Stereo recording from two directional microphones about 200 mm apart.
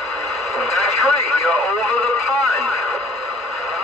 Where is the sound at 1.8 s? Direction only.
Centre (ahead or behind).